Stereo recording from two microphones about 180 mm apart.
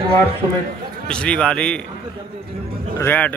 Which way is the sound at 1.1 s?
5° left (ahead or behind).